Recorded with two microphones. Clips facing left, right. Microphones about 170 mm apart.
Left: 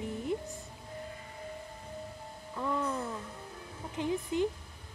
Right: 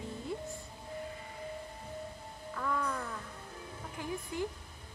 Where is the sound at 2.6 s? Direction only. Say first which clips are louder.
Left 3 dB; 25° left (ahead or behind).